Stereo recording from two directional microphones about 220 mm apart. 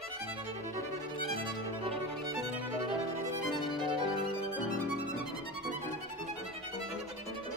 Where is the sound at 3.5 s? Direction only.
20° right (ahead or behind).